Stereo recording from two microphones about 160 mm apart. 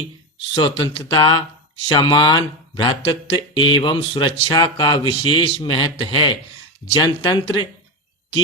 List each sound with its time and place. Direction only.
0.5 s speech: 25° left (ahead or behind)